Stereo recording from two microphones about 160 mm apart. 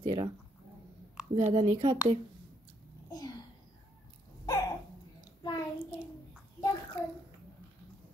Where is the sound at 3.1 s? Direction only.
25° left (ahead or behind).